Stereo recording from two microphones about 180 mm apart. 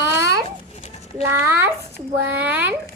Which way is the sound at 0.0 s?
15° right (ahead or behind).